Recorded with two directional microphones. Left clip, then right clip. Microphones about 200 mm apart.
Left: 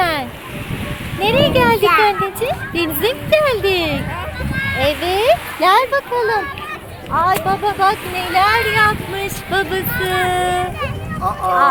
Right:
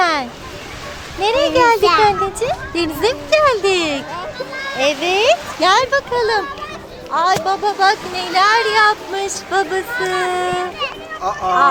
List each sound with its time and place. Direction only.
0.0 s waves: centre (ahead or behind)
1.2 s a sound: centre (ahead or behind)
1.8 s speech: 30° right (ahead or behind)
2.0 s a child's voice: centre (ahead or behind)